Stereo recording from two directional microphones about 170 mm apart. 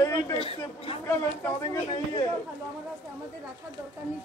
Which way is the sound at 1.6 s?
20° left (ahead or behind).